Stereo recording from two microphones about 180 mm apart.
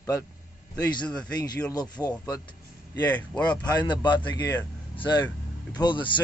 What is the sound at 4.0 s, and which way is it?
Speech, 25° left (ahead or behind).